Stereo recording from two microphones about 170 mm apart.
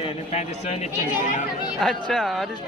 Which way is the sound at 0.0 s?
40° left (ahead or behind).